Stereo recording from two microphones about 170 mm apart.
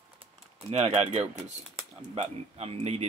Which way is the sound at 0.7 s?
35° right (ahead or behind).